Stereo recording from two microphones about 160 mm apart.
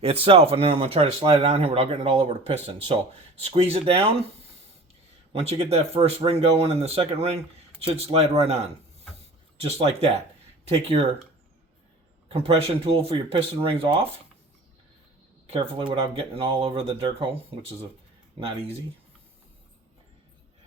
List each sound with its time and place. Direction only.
0.0 s speech: 40° right (ahead or behind)
5.3 s speech: 40° right (ahead or behind)
12.3 s speech: 35° right (ahead or behind)
15.4 s speech: 35° right (ahead or behind)